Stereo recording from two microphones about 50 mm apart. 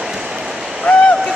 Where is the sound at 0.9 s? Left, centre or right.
Centre.